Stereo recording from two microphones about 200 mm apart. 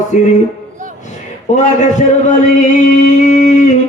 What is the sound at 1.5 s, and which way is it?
Speech, 35° left (ahead or behind).